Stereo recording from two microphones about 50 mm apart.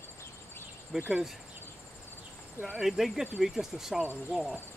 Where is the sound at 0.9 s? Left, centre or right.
Centre.